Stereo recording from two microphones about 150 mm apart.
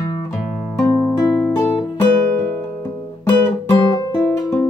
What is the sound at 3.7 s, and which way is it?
Guitar, 25° left (ahead or behind).